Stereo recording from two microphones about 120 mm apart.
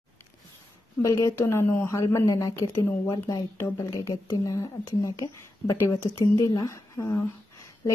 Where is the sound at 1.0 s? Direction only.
25° left (ahead or behind).